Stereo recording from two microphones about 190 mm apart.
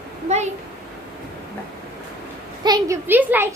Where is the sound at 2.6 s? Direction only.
20° right (ahead or behind).